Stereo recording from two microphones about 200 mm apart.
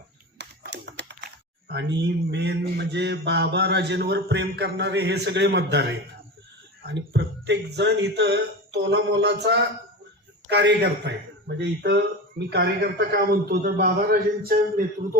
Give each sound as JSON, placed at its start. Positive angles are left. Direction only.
{"t": 0.3, "sound": "typing", "side_deg": -60}
{"t": 2.3, "sound": "a man's voice", "side_deg": -60}